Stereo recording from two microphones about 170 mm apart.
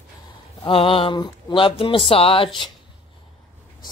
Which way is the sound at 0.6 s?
30° left (ahead or behind).